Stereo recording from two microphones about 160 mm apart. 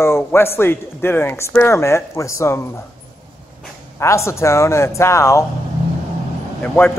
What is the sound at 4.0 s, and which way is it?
Speech, 15° left (ahead or behind).